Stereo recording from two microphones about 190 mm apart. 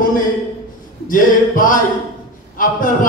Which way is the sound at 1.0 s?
45° left (ahead or behind).